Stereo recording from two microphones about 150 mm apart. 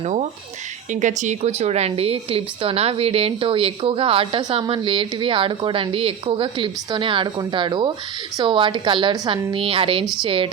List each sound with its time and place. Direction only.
1.0 s a woman's voice: 55° right (ahead or behind); by 10.5 s 35° right (ahead or behind)